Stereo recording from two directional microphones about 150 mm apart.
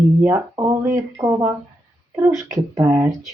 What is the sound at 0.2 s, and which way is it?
Speech, 15° right (ahead or behind).